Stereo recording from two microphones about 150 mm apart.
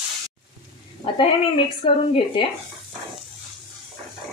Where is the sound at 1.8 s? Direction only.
35° left (ahead or behind).